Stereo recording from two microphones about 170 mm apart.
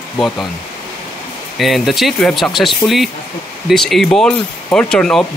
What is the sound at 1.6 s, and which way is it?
Speech, centre (ahead or behind).